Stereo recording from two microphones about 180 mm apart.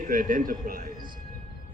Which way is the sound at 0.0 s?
50° right (ahead or behind).